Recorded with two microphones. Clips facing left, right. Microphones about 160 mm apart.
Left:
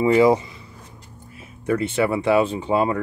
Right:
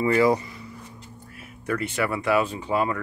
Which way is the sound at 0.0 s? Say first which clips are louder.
Left 4 dB; 20° left (ahead or behind).